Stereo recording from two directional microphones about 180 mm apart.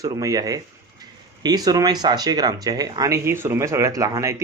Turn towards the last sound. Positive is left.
turn(degrees=-20)  # may be behind; listen again after turning